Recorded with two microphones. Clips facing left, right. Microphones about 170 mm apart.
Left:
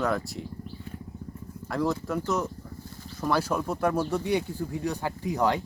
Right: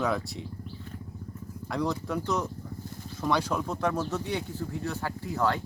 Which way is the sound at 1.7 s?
Centre (ahead or behind).